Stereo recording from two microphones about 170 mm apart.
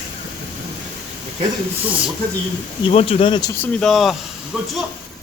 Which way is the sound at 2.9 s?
35° left (ahead or behind).